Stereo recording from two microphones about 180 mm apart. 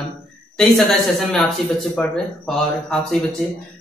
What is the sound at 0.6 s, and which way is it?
Speech, centre (ahead or behind).